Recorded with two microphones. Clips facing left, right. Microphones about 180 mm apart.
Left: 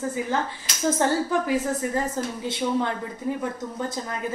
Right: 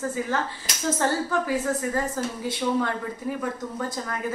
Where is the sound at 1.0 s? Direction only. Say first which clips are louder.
Left 1 dB; 20° left (ahead or behind).